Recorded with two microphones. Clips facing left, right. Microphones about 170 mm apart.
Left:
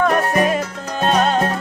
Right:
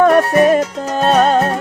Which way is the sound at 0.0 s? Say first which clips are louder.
Right 6 dB; 45° right (ahead or behind).